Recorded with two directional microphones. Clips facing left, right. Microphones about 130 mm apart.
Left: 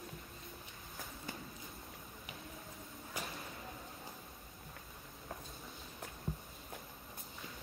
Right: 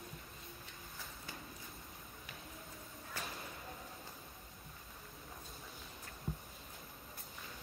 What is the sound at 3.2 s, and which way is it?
Whip, 15° left (ahead or behind).